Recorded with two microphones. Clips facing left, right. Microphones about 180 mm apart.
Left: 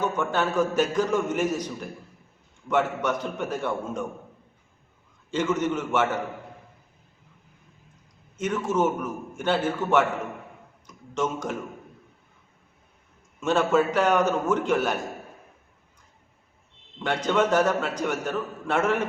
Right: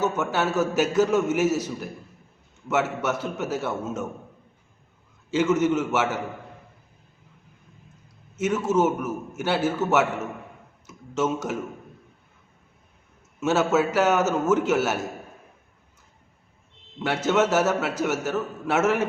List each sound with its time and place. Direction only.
0.0 s a man's voice: 5° right (ahead or behind)
5.3 s a man's voice: 10° right (ahead or behind)
8.4 s a man's voice: 5° right (ahead or behind)
10.8 s a sound: 5° right (ahead or behind)
13.4 s a man's voice: 5° right (ahead or behind)
17.0 s a man's voice: 5° right (ahead or behind)